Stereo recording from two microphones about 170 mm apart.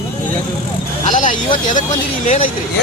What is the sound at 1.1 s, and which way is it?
Speech, 50° left (ahead or behind).